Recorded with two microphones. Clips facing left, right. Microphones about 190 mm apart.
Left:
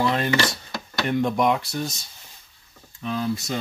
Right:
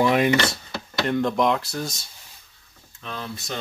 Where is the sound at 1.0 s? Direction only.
5° left (ahead or behind).